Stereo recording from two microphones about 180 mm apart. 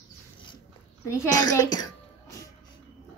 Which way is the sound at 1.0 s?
15° left (ahead or behind).